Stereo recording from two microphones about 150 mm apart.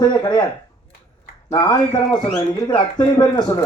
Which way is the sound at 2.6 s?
30° left (ahead or behind).